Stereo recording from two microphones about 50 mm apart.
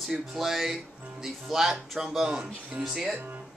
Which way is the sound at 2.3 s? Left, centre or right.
Right.